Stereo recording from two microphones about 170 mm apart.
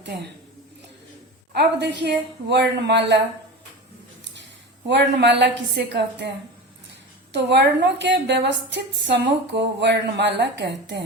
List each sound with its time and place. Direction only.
1.5 s a woman's voice: 85° right
4.9 s a woman's voice: 85° right
7.5 s a woman's voice: 90° right